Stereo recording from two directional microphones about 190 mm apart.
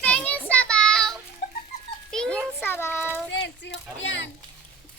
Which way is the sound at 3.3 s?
75° left (ahead or behind).